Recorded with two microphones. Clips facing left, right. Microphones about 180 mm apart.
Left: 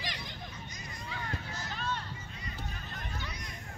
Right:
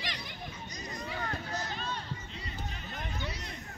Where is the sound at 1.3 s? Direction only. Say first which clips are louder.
Right 3 dB; 40° right (ahead or behind).